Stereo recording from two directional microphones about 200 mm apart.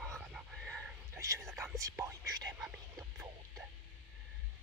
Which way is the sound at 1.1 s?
15° right (ahead or behind).